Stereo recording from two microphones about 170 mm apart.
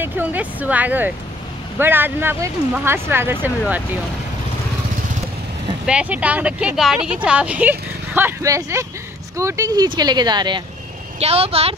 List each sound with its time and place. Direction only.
0.0 s a woman's voice: 10° right (ahead or behind)
5.9 s a woman's voice: 5° right (ahead or behind); by 10.6 s 25° right (ahead or behind)
11.1 s a woman's voice: 35° right (ahead or behind)